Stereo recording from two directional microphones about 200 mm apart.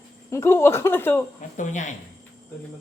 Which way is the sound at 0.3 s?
15° left (ahead or behind).